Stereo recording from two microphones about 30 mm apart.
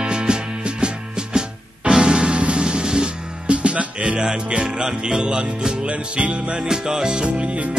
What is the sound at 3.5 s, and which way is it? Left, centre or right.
Music, right.